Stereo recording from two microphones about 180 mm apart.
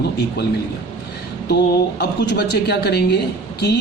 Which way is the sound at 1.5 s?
70° left (ahead or behind).